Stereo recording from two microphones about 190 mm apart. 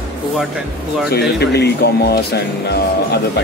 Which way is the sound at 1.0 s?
60° left (ahead or behind).